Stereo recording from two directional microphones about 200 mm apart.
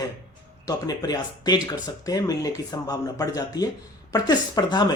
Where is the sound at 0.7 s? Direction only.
20° left (ahead or behind).